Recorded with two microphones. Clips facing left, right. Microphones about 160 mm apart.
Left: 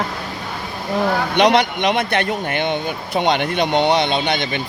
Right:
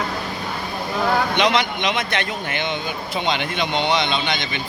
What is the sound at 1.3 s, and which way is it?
Speech, 60° left (ahead or behind).